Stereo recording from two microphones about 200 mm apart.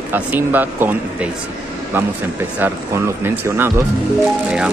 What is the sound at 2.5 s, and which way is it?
Speech, 10° right (ahead or behind).